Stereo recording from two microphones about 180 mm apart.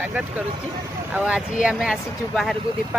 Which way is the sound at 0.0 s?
10° right (ahead or behind).